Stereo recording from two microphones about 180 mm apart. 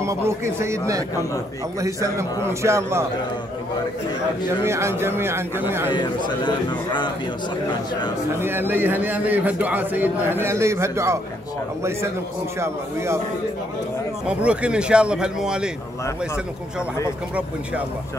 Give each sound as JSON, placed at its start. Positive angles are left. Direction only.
{"t": 0.0, "sound": "a man's voice", "side_deg": -15}
{"t": 4.6, "sound": "a man's voice", "side_deg": -15}
{"t": 5.9, "sound": "a man's voice", "side_deg": 25}
{"t": 8.4, "sound": "a man's voice", "side_deg": -10}
{"t": 12.5, "sound": "a man's voice", "side_deg": -15}
{"t": 14.2, "sound": "speech", "side_deg": -5}